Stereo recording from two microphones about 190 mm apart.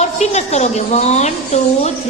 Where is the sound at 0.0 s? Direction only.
35° left (ahead or behind).